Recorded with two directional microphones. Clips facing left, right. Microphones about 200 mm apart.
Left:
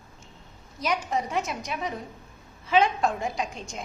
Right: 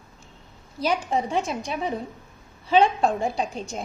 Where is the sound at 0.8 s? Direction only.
30° right (ahead or behind).